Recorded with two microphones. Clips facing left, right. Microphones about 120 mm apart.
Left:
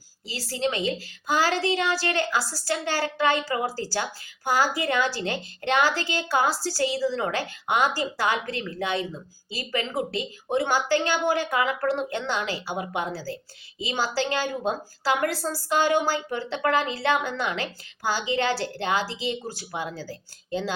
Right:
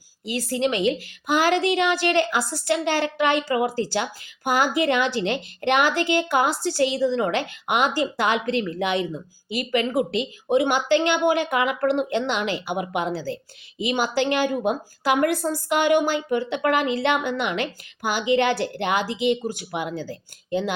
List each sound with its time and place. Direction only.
0.5 s a woman's voice: 20° right (ahead or behind)